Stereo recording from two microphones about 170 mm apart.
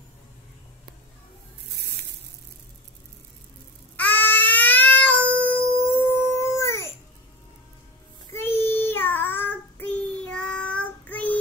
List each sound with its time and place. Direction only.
3.9 s cat: 10° left (ahead or behind)
5.9 s dog: 10° left (ahead or behind)
8.3 s child singing: 15° left (ahead or behind)